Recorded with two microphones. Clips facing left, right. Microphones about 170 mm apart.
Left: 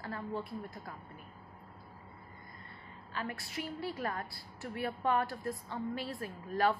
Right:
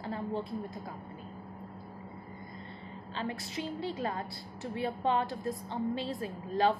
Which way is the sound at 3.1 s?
25° right (ahead or behind).